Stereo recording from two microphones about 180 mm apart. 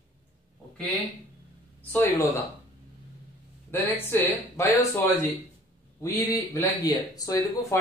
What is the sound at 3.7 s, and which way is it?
Speech, 10° left (ahead or behind).